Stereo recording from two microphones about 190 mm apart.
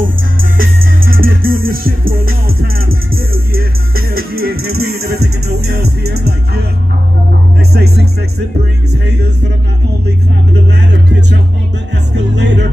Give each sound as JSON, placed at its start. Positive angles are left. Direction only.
{"t": 0.0, "sound": "music", "side_deg": -50}
{"t": 7.7, "sound": "music", "side_deg": -55}